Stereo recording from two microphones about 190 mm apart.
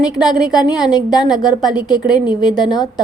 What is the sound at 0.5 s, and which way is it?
A woman's voice, 20° left (ahead or behind).